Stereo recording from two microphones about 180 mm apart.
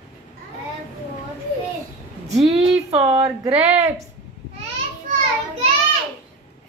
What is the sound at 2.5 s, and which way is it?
Speech, 35° right (ahead or behind).